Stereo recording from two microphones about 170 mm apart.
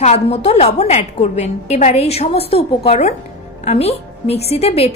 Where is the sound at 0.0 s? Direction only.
40° left (ahead or behind).